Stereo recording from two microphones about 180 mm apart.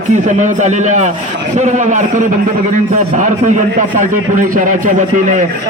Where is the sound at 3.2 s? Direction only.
45° right (ahead or behind).